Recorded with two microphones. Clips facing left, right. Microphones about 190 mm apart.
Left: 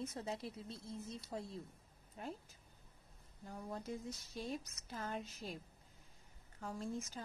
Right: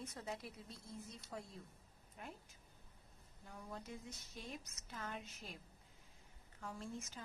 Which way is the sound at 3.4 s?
40° left (ahead or behind).